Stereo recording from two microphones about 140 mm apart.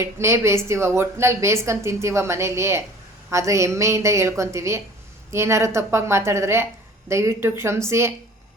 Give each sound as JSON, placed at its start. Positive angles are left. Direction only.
{"t": 0.0, "sound": "a woman's voice", "side_deg": -20}